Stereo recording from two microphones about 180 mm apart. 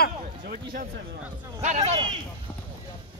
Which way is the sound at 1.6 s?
40° right (ahead or behind).